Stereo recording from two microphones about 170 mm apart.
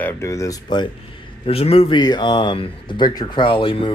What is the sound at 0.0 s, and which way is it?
Speech, 15° left (ahead or behind).